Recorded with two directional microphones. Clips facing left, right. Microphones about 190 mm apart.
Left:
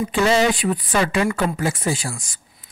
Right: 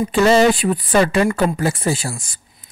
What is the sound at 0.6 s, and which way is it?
Speech, 35° right (ahead or behind).